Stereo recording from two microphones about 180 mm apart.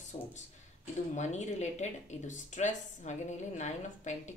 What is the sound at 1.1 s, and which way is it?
Speech, 40° left (ahead or behind).